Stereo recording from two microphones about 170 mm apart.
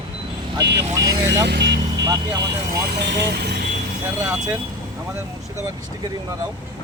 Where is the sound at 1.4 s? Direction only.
85° right.